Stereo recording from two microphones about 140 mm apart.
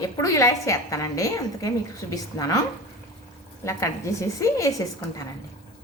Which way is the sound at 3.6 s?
20° left (ahead or behind).